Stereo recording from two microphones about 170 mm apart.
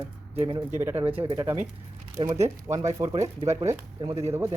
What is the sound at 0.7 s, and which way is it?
Speech, 15° right (ahead or behind).